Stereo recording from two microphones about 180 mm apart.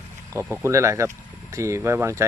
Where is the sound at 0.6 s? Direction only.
15° right (ahead or behind).